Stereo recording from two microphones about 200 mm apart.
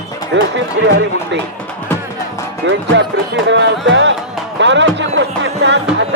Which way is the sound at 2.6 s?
65° right (ahead or behind).